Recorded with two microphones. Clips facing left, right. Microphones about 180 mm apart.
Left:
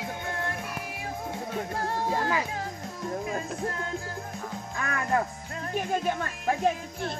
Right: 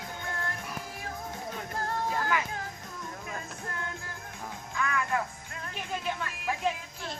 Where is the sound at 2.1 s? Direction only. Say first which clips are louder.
Left 3 dB; 30° left (ahead or behind).